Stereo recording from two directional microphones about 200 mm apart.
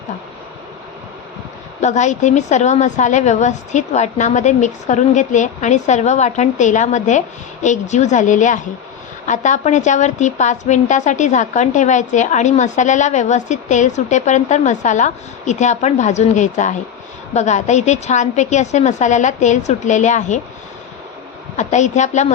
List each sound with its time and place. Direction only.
1.8 s a woman's voice: 35° left (ahead or behind)
21.5 s a woman's voice: 35° left (ahead or behind)